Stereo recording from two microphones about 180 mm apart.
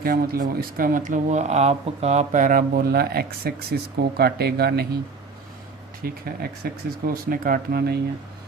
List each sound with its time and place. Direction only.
0.0 s speech: 55° right (ahead or behind)
6.0 s speech: 55° right (ahead or behind)